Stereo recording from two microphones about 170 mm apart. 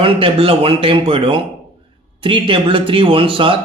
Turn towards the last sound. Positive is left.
turn(degrees=-30)  # may be behind; listen again after turning